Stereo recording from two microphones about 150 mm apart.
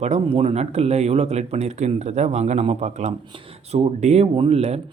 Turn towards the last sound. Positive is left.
turn(degrees=-45)  # may be behind; listen again after turning